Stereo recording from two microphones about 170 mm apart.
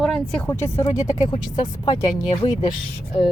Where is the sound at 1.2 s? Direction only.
25° left (ahead or behind).